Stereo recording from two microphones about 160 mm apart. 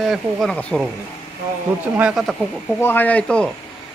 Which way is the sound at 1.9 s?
5° right (ahead or behind).